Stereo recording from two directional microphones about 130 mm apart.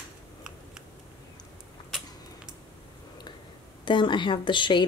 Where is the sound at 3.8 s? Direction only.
35° left (ahead or behind).